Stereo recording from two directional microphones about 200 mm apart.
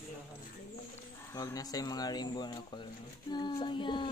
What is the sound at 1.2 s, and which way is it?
Speech, 15° left (ahead or behind).